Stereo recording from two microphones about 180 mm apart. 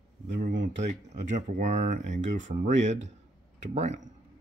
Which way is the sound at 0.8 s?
40° right (ahead or behind).